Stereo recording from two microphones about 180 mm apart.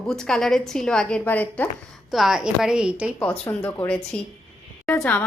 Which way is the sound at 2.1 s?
Centre (ahead or behind).